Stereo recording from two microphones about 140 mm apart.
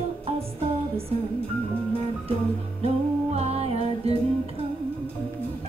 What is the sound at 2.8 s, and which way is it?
Music, 50° right (ahead or behind).